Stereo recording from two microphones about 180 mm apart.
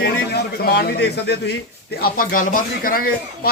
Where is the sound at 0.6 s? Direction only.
60° left (ahead or behind).